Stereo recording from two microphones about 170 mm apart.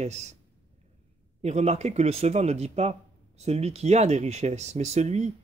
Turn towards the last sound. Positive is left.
turn(degrees=-40)  # may be behind; listen again after turning